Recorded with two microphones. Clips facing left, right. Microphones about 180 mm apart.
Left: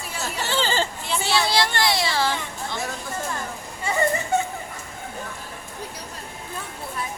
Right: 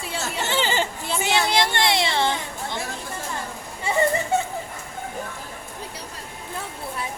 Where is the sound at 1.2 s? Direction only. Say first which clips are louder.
Right 1 dB; 20° right (ahead or behind).